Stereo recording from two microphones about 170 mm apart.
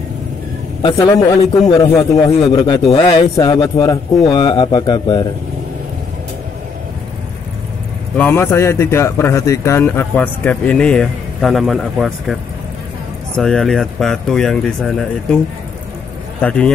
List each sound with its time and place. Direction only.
0.9 s a man's voice: 25° left (ahead or behind)
8.2 s a man's voice: 15° left (ahead or behind)
13.4 s speech: centre (ahead or behind)
16.3 s speech: 5° left (ahead or behind)